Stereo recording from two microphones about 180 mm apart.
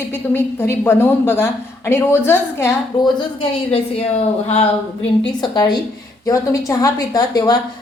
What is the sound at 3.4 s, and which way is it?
A woman's voice, 30° left (ahead or behind).